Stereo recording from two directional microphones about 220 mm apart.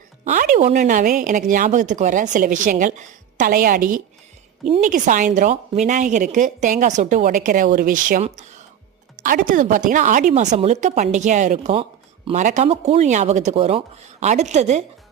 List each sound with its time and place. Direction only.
0.3 s speech: 35° right (ahead or behind)